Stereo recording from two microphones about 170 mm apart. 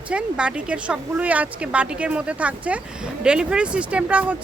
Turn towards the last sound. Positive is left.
turn(degrees=-10)  # may be behind; listen again after turning